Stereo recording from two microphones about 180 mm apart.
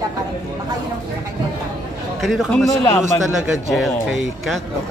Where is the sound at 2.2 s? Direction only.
Centre (ahead or behind).